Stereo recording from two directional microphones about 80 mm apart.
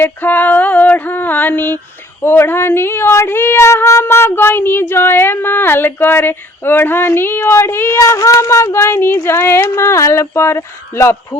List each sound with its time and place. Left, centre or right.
0.0 s speech: left